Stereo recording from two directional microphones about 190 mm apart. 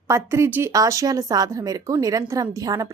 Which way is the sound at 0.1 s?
15° right (ahead or behind).